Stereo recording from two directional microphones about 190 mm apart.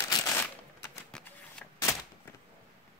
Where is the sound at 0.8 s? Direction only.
5° left (ahead or behind).